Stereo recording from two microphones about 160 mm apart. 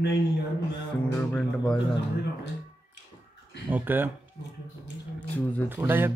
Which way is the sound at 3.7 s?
10° right (ahead or behind).